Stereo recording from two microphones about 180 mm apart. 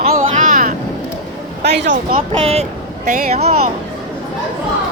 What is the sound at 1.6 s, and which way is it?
Speech, 75° right (ahead or behind).